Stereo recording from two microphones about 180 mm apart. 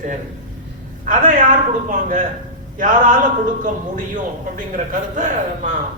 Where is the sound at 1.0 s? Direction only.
45° right (ahead or behind).